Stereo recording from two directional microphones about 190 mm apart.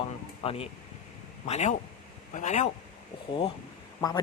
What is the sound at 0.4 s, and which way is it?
Speech, 30° left (ahead or behind).